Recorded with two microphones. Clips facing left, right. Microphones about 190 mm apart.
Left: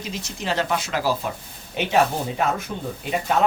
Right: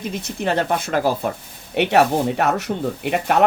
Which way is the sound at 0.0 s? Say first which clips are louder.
Right 6 dB; 55° right (ahead or behind).